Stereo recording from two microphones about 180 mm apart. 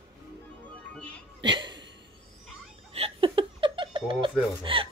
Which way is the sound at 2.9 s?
30° right (ahead or behind).